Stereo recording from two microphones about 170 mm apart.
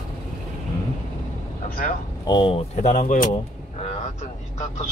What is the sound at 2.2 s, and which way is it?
Speech, 30° left (ahead or behind).